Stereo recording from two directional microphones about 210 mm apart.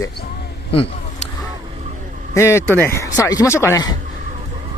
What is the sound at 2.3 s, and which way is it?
Speech, 10° left (ahead or behind).